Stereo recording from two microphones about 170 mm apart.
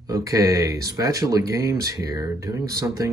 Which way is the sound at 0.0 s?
20° right (ahead or behind).